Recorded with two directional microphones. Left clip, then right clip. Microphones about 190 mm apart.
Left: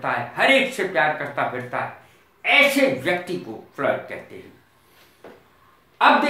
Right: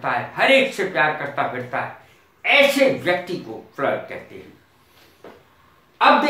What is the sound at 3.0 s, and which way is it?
Speech, 20° left (ahead or behind).